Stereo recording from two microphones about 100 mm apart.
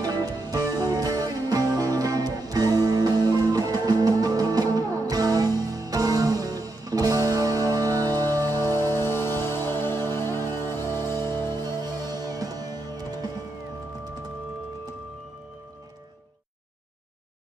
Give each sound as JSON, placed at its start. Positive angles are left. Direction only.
{"t": 0.0, "sound": "music", "side_deg": -40}
{"t": 8.5, "sound": "music", "side_deg": 25}
{"t": 11.4, "sound": "music", "side_deg": -40}